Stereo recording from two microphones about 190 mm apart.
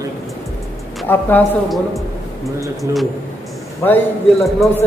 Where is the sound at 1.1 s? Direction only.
10° left (ahead or behind).